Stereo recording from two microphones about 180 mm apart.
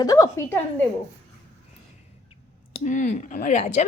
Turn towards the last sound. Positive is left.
turn(degrees=40)  # may be behind; listen again after turning